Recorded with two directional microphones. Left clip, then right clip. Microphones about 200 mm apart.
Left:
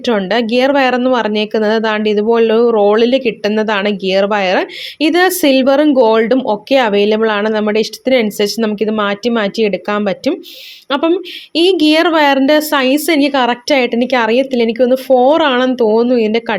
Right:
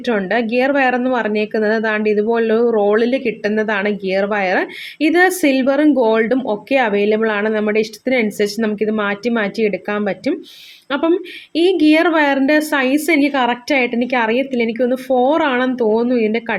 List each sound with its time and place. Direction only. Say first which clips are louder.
0.0 s a woman's voice: left 4 dB; 30° left (ahead or behind)